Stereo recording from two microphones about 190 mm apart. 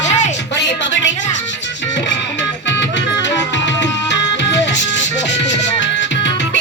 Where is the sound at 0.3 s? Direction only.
65° left (ahead or behind).